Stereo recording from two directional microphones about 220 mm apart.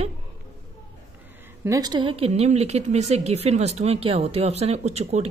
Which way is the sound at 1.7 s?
20° right (ahead or behind).